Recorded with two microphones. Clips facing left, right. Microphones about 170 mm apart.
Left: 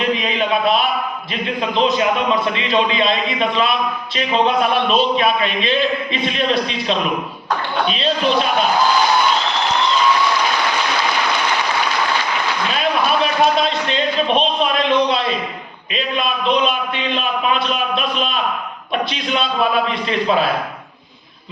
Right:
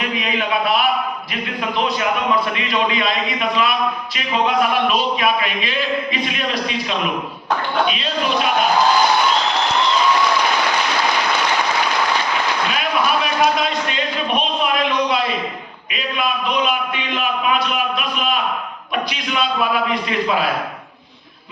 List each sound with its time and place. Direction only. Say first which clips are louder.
0.2 s a sound: left 2 dB; 25° left (ahead or behind)
1.8 s a man's voice: left 4 dB; 25° left (ahead or behind)
15.9 s a man's voice: left 2 dB; 25° left (ahead or behind)
19.9 s a man's voice: left 2 dB; 30° left (ahead or behind)